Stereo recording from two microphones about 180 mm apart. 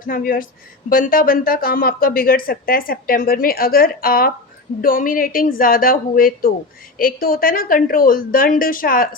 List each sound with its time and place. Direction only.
0.1 s speech: 50° left (ahead or behind)